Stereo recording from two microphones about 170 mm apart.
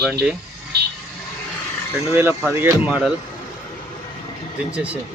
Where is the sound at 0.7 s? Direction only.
70° right (ahead or behind).